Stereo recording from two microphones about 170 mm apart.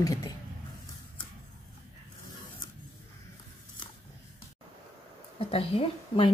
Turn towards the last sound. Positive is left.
turn(degrees=35)  # may be behind; listen again after turning